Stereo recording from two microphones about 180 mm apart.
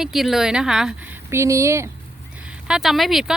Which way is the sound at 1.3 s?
15° right (ahead or behind).